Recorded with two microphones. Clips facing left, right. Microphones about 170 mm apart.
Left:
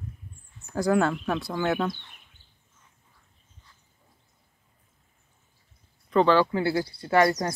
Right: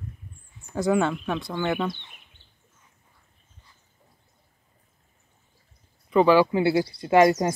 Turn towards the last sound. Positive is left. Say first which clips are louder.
# right 4 dB
turn(degrees=-15)  # may be behind; listen again after turning